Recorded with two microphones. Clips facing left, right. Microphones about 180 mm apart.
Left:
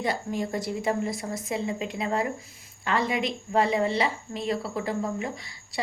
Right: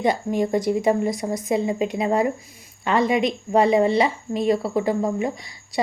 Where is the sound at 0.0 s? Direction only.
20° right (ahead or behind).